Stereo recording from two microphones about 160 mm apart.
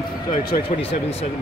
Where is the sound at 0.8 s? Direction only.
35° left (ahead or behind).